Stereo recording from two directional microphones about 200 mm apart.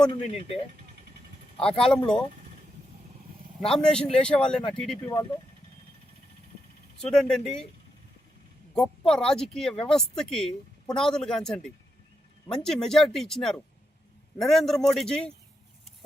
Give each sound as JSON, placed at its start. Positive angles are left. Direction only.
{"t": 0.1, "sound": "speech", "side_deg": 30}
{"t": 1.6, "sound": "speech", "side_deg": 5}
{"t": 3.7, "sound": "speech", "side_deg": 5}
{"t": 7.0, "sound": "speech", "side_deg": 0}
{"t": 8.7, "sound": "speech", "side_deg": 0}